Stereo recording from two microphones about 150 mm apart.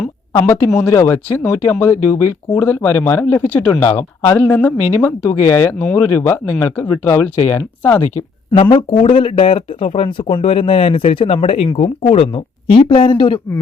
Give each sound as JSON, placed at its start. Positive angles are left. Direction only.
{"t": 0.3, "sound": "speech", "side_deg": 15}
{"t": 8.7, "sound": "speech", "side_deg": 35}